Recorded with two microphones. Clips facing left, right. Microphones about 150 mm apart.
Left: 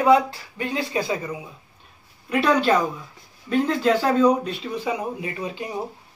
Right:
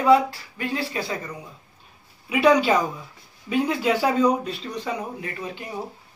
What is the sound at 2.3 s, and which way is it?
A man's voice, 10° right (ahead or behind).